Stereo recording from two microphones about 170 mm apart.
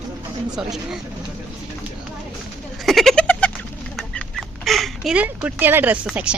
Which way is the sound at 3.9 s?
5° left (ahead or behind).